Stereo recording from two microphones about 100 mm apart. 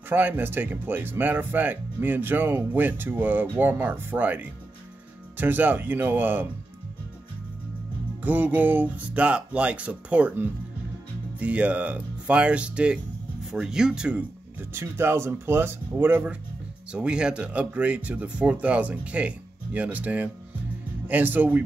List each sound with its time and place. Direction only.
0.1 s speech: 20° right (ahead or behind)
8.2 s speech: 15° right (ahead or behind)
14.7 s speech: 25° right (ahead or behind)
16.9 s speech: 10° right (ahead or behind)